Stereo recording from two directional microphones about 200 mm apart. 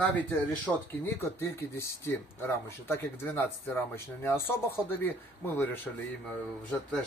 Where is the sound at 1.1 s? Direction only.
10° left (ahead or behind).